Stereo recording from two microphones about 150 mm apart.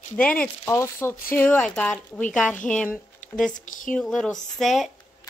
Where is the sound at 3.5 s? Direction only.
60° left (ahead or behind).